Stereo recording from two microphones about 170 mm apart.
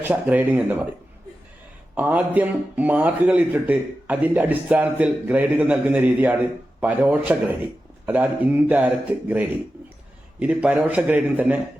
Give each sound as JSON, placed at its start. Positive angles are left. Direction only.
{"t": 0.0, "sound": "speech", "side_deg": -10}
{"t": 2.0, "sound": "speech", "side_deg": -10}